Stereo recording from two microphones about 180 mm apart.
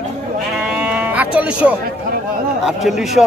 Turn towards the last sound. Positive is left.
turn(degrees=0)  # may be behind; listen again after turning